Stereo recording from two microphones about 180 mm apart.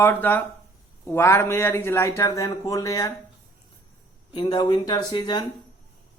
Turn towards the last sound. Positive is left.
turn(degrees=25)  # may be behind; listen again after turning